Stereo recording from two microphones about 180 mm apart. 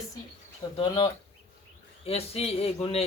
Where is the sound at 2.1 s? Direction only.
35° left (ahead or behind).